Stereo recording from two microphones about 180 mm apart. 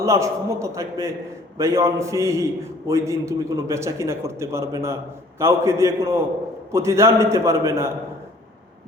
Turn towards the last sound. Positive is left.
turn(degrees=-15)  # may be behind; listen again after turning